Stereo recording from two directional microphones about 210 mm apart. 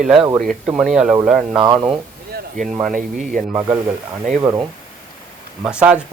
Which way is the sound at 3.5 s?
15° right (ahead or behind).